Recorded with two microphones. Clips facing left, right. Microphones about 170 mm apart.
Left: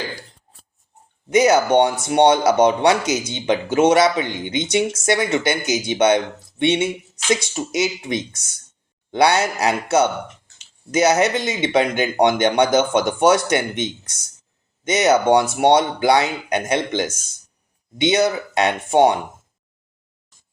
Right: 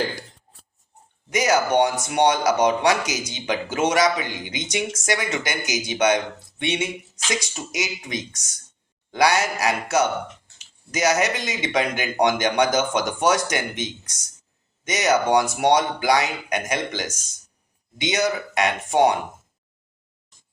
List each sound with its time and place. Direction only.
1.3 s speech: 25° left (ahead or behind)